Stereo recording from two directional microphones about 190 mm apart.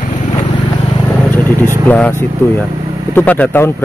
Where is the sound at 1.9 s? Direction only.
10° left (ahead or behind).